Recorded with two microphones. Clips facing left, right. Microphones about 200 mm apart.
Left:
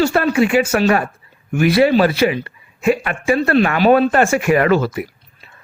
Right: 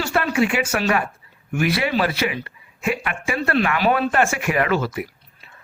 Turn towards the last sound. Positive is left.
turn(degrees=40)  # may be behind; listen again after turning